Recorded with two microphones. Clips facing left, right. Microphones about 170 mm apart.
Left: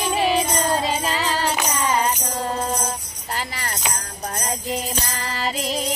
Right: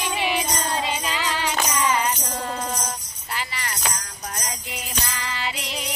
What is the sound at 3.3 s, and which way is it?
Music, 45° left (ahead or behind).